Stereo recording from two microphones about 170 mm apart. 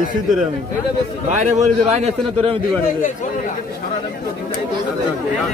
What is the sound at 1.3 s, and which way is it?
A man's voice, 45° right (ahead or behind).